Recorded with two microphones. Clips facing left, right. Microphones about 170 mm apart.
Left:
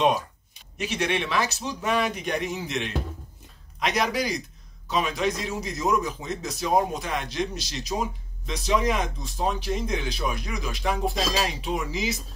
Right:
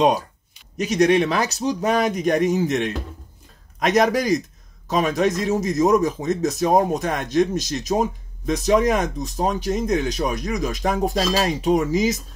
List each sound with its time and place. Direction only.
0.7 s speech: 40° right (ahead or behind)